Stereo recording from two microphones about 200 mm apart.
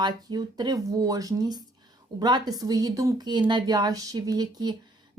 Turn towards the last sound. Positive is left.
turn(degrees=-20)  # may be behind; listen again after turning